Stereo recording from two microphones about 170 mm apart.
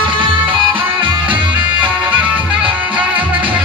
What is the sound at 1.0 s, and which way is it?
Music, 30° right (ahead or behind).